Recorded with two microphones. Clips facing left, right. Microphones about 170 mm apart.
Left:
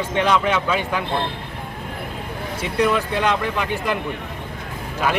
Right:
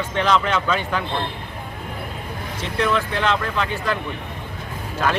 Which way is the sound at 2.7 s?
10° left (ahead or behind).